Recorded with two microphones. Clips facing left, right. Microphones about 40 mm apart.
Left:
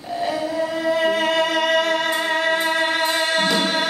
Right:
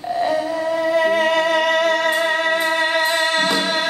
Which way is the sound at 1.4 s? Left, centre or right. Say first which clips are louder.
Right 2 dB; right.